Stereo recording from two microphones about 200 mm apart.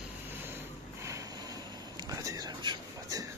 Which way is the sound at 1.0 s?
20° right (ahead or behind).